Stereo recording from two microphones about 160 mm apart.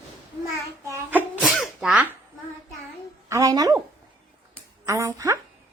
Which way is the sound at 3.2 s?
20° right (ahead or behind).